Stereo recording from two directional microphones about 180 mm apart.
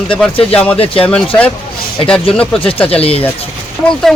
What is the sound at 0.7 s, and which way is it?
Speech, 30° left (ahead or behind).